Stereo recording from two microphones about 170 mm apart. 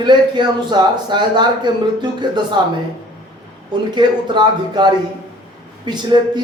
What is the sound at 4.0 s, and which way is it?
A man's voice, 25° right (ahead or behind).